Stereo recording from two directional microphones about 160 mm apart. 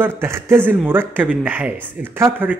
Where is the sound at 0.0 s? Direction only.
15° right (ahead or behind).